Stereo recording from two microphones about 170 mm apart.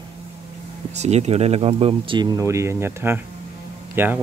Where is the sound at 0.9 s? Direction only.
40° right (ahead or behind).